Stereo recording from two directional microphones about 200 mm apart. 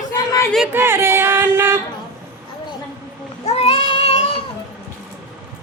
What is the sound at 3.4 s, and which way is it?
Child singing, 30° left (ahead or behind).